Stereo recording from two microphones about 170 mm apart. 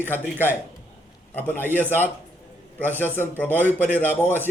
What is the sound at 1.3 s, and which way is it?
Speech, 10° left (ahead or behind).